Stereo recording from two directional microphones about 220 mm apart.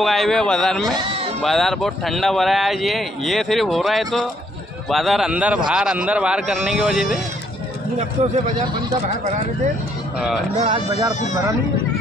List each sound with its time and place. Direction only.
0.0 s speech: centre (ahead or behind)
0.9 s speech: 20° right (ahead or behind)
1.4 s speech: centre (ahead or behind)
10.6 s speech: 20° right (ahead or behind)